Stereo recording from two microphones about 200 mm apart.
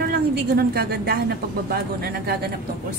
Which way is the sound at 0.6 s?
50° right (ahead or behind).